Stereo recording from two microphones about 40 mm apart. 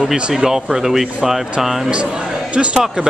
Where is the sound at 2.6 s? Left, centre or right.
Centre.